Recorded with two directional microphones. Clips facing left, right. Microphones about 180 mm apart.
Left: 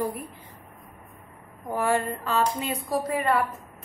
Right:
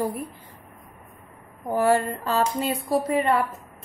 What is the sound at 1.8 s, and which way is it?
A woman's voice, 35° right (ahead or behind).